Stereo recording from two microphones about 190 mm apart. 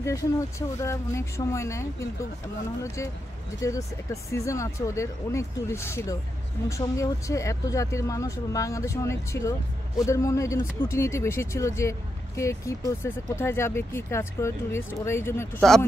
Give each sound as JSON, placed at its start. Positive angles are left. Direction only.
{"t": 0.0, "sound": "speech", "side_deg": 15}